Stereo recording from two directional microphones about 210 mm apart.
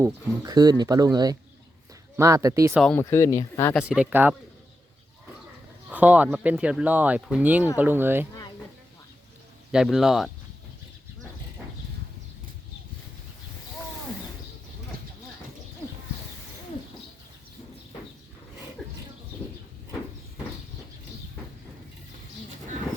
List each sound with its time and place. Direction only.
0.0 s speech: 20° right (ahead or behind)
2.8 s speech: 10° left (ahead or behind)
3.8 s speech: 5° right (ahead or behind)
5.9 s speech: 5° right (ahead or behind)
9.7 s speech: centre (ahead or behind)